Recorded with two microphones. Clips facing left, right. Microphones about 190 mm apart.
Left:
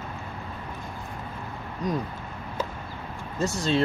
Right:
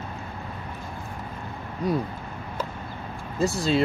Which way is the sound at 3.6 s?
5° right (ahead or behind).